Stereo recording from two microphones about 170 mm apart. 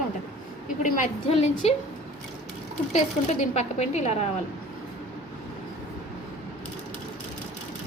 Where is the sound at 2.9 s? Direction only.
45° left (ahead or behind).